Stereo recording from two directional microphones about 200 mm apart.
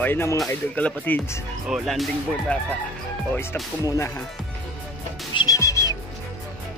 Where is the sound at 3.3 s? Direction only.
10° left (ahead or behind).